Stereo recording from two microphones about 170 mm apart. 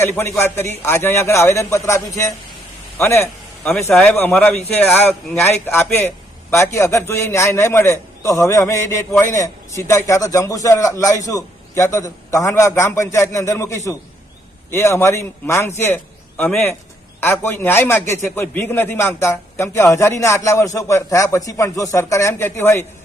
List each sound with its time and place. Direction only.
0.0 s a man's voice: 15° left (ahead or behind)
17.2 s a man's voice: 15° left (ahead or behind)